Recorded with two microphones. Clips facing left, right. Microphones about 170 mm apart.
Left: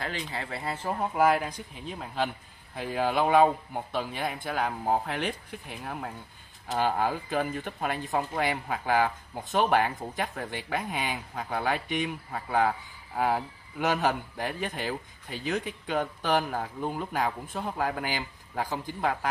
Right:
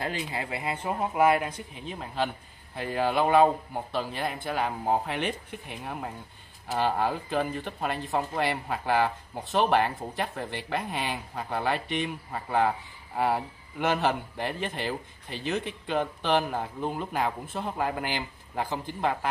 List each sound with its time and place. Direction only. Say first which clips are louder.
0.3 s speech: right 2 dB; 20° right (ahead or behind)
0.7 s speech: even; 5° right (ahead or behind)